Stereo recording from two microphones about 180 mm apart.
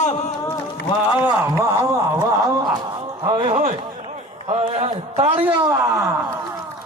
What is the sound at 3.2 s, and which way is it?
A man's voice, 30° right (ahead or behind).